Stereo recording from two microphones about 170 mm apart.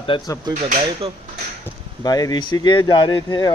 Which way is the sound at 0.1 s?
30° left (ahead or behind).